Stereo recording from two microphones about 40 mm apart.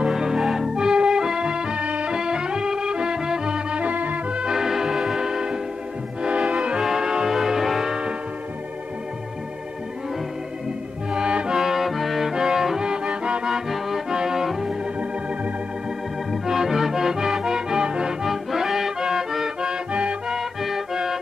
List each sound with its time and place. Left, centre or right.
0.0 s music: centre; by 2.1 s right
2.1 s music: centre
3.8 s music: right
4.4 s music: centre
6.8 s music: centre
11.1 s music: right
11.5 s music: centre
12.8 s music: right
13.5 s accordion: centre
14.1 s music: centre
16.3 s music: centre
18.2 s music: centre
19.9 s music: right
20.6 s music: centre